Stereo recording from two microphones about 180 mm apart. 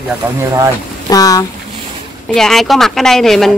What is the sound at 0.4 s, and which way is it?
Speech, 20° right (ahead or behind).